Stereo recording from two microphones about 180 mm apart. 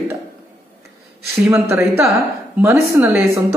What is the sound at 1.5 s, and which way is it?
A woman's voice, 15° right (ahead or behind).